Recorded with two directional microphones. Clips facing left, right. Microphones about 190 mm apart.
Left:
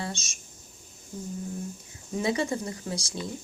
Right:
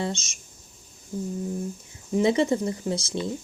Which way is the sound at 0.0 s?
20° right (ahead or behind).